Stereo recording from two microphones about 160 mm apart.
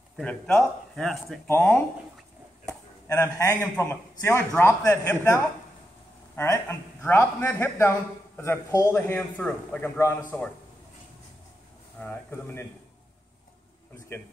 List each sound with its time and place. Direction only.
0.2 s a man's voice: 5° left (ahead or behind)
3.1 s a man's voice: 20° left (ahead or behind)
12.0 s a man's voice: 10° left (ahead or behind)
13.9 s speech: 15° left (ahead or behind)